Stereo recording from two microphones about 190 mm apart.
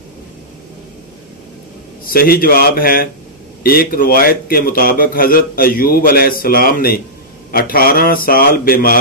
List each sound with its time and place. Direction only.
2.0 s a man's voice: 50° left (ahead or behind)